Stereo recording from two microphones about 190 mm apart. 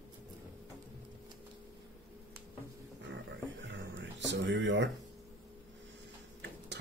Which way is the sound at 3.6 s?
70° right (ahead or behind).